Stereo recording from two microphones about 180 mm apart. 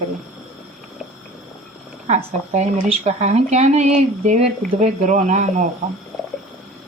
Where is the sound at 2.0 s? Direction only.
40° right (ahead or behind).